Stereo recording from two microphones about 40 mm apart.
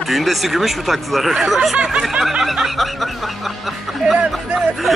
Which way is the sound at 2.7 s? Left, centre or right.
Centre.